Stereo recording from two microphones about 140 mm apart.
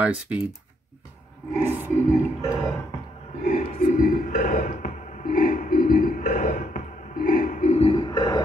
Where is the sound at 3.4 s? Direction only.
65° left (ahead or behind).